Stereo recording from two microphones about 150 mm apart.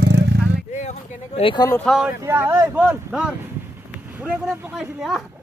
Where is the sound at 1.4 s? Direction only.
30° left (ahead or behind).